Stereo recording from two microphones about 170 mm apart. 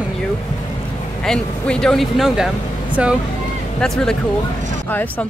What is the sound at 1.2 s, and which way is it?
A woman's voice, 5° left (ahead or behind).